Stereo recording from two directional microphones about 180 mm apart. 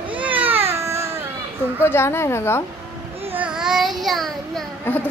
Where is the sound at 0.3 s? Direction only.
30° right (ahead or behind).